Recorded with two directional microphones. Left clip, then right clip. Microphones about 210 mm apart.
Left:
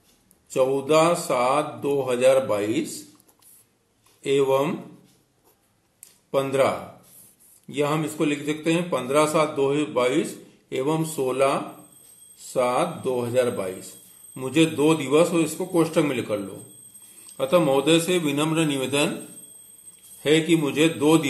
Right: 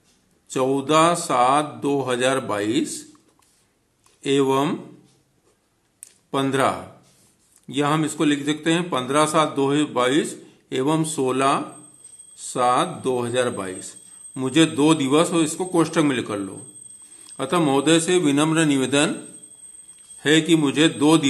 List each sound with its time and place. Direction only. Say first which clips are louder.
0.5 s a man's voice: even; 45° right (ahead or behind)
4.2 s a man's voice: right 1 dB; 45° right (ahead or behind)
6.3 s a man's voice: right 1 dB; 45° right (ahead or behind)
7.6 s a man's voice: right 3 dB; 50° right (ahead or behind)
17.4 s a man's voice: left 1 dB; 45° right (ahead or behind)
20.2 s a man's voice: right 2 dB; 45° right (ahead or behind)